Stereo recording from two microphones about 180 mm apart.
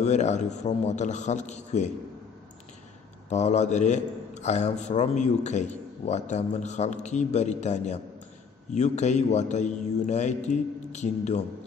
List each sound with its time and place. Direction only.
0.0 s a man's voice: 40° left (ahead or behind)
3.3 s a man's voice: 40° left (ahead or behind)